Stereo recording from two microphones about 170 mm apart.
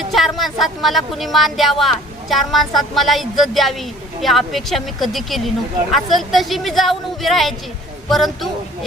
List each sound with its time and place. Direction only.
0.0 s speech: centre (ahead or behind)